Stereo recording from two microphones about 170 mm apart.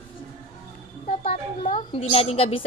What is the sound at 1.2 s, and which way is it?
A child's voice, 35° left (ahead or behind).